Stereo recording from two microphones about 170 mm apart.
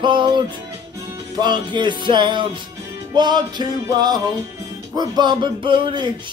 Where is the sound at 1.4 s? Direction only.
25° right (ahead or behind).